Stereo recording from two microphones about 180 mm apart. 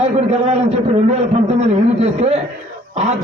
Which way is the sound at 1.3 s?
40° right (ahead or behind).